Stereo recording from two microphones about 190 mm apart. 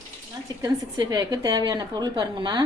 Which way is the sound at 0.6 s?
20° right (ahead or behind).